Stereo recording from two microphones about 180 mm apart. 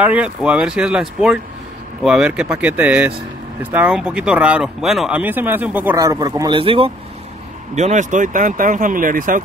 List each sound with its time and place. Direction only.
0.0 s speech: 5° right (ahead or behind); by 6.9 s 30° right (ahead or behind)
7.7 s speech: 40° right (ahead or behind)